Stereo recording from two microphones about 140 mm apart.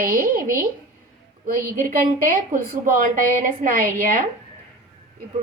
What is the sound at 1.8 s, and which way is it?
A woman's voice, 75° right (ahead or behind).